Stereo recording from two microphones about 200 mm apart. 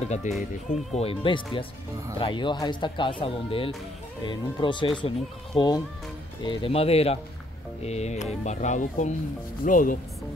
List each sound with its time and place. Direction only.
0.0 s speech: 35° left (ahead or behind)